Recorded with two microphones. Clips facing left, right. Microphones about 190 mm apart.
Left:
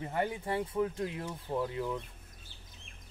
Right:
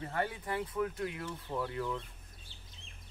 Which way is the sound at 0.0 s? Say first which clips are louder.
Left 3 dB; 20° left (ahead or behind).